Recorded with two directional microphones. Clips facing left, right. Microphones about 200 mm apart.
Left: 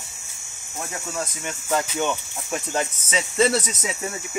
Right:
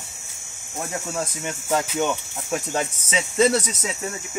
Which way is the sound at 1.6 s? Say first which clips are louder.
Right 1 dB; 5° right (ahead or behind).